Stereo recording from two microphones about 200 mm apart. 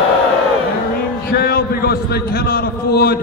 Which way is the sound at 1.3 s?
50° left (ahead or behind).